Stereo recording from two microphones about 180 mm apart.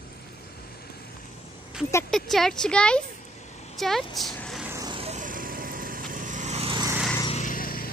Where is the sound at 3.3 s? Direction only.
40° left (ahead or behind).